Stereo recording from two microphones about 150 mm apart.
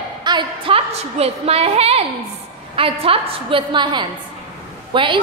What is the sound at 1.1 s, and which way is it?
A woman's voice, 40° right (ahead or behind).